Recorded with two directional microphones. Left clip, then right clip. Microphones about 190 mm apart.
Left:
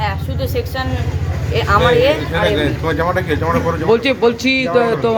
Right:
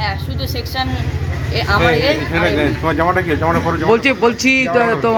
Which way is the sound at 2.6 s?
30° right (ahead or behind).